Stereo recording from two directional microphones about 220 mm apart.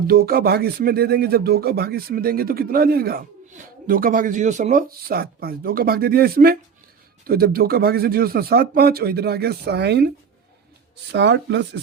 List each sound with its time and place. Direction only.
0.1 s speech: 45° right (ahead or behind)
11.1 s speech: 50° right (ahead or behind)